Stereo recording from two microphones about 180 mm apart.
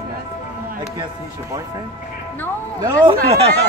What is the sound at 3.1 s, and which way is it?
Speech, 35° right (ahead or behind).